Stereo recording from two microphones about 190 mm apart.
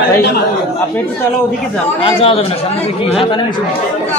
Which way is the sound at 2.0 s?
30° left (ahead or behind).